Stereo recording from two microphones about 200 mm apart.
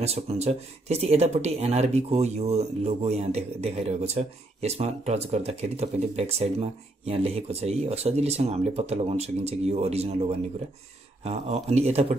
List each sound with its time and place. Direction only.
0.0 s speech: 30° right (ahead or behind)
11.2 s speech: 30° right (ahead or behind)